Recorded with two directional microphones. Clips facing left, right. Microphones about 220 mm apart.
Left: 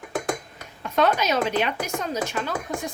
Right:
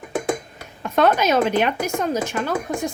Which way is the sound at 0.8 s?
55° right (ahead or behind).